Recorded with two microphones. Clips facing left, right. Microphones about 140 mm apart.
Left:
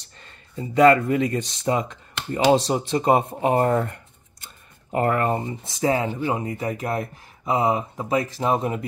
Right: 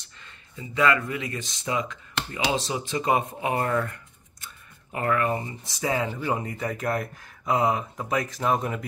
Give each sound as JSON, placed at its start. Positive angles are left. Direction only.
{"t": 0.2, "sound": "speech", "side_deg": 40}
{"t": 5.8, "sound": "speech", "side_deg": 25}